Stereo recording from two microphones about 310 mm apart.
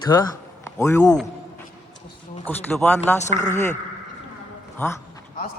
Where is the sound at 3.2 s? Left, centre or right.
Left.